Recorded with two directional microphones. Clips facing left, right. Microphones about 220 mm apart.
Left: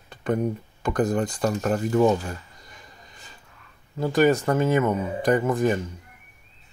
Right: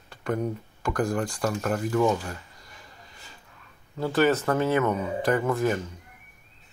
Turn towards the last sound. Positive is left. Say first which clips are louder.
# left 3 dB
turn(degrees=15)  # may be behind; listen again after turning